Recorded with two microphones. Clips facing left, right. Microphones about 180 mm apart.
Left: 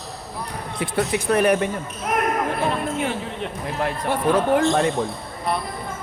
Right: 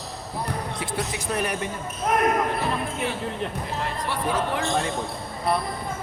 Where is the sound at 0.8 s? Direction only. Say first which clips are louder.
Left 6 dB; 60° left (ahead or behind).